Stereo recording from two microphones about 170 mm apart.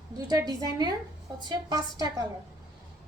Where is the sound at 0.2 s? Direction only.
25° right (ahead or behind).